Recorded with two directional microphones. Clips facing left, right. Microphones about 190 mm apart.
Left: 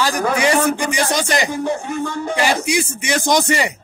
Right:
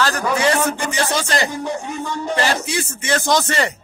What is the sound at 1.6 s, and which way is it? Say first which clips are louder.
Music: left 3 dB; 55° left (ahead or behind).